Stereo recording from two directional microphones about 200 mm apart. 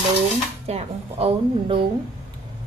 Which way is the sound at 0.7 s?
30° right (ahead or behind).